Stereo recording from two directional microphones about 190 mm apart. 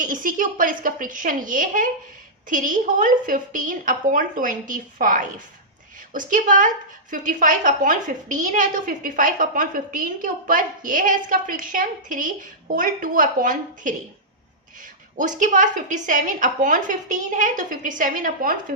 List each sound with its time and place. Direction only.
0.0 s a woman's voice: 45° right (ahead or behind)
15.2 s a woman's voice: 40° right (ahead or behind)